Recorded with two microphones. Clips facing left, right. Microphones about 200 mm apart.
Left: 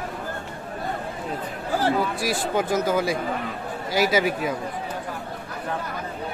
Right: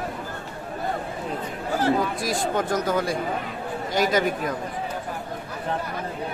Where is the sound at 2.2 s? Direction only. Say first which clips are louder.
Left 1 dB; 5° left (ahead or behind).